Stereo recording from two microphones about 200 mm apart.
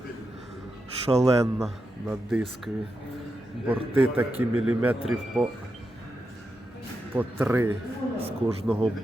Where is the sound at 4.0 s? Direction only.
5° right (ahead or behind).